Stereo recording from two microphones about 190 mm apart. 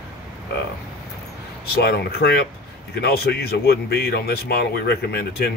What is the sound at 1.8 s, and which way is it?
A man's voice, 55° left (ahead or behind).